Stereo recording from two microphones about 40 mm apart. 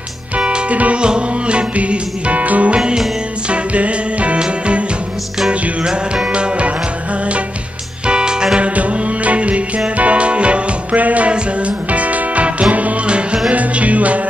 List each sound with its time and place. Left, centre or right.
0.4 s music: right
0.7 s music: right
1.0 s music: right
1.8 s music: right
2.7 s music: right
8.1 s music: right
8.5 s music: right